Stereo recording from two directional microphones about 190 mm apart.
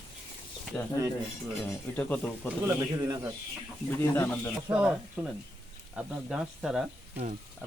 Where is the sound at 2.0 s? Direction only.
10° left (ahead or behind).